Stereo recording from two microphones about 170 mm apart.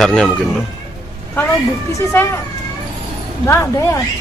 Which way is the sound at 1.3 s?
15° left (ahead or behind).